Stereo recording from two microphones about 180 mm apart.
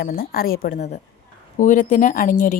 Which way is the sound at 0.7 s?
40° left (ahead or behind).